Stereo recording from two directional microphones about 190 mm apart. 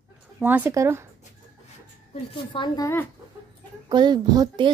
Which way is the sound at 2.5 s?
20° left (ahead or behind).